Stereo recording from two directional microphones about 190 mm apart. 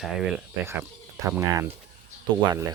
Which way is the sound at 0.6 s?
15° right (ahead or behind).